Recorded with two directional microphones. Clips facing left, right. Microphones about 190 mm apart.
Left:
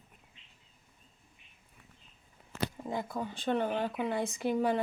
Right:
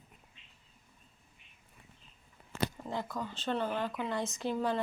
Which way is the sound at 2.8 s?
15° left (ahead or behind).